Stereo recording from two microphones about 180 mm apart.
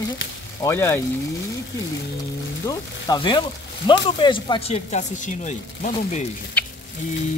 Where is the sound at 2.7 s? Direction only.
25° left (ahead or behind); by 6.2 s 40° left (ahead or behind).